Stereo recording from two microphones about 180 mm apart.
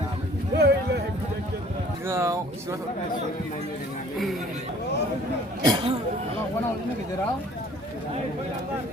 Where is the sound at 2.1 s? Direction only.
15° right (ahead or behind).